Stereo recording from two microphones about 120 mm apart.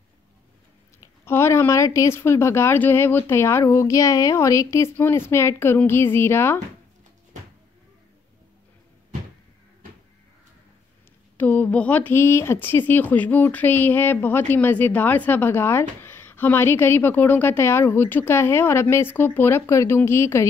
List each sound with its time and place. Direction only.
1.2 s speech: 20° left (ahead or behind)
11.3 s speech: 15° left (ahead or behind)